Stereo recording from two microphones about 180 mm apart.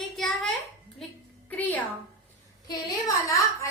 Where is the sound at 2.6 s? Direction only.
20° left (ahead or behind).